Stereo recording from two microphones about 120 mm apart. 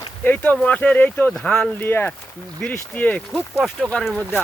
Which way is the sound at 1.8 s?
15° left (ahead or behind).